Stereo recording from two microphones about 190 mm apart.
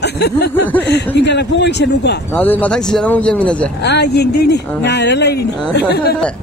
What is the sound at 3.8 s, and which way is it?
Speech, 60° left (ahead or behind).